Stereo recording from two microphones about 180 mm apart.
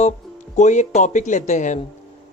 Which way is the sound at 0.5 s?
40° left (ahead or behind).